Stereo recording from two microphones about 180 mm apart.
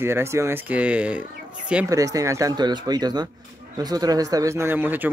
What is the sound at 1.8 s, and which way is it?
Speech, 20° right (ahead or behind).